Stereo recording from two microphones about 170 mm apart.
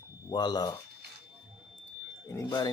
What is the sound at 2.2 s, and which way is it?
Speech, 20° left (ahead or behind).